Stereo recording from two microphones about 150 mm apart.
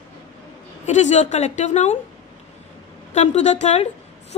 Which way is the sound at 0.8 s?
50° left (ahead or behind).